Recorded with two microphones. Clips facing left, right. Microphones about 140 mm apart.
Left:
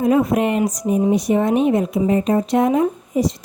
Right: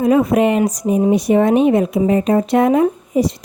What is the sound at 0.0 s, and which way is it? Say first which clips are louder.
Speech: right 3 dB; 85° right.